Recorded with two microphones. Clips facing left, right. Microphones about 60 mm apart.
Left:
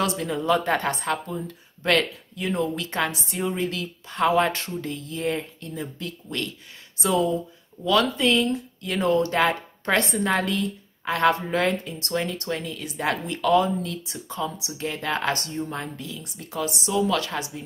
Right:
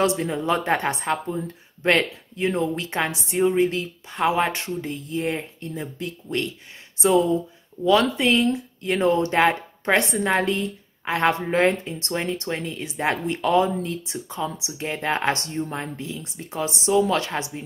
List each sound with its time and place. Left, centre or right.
0.0 s speech: right
4.1 s speech: centre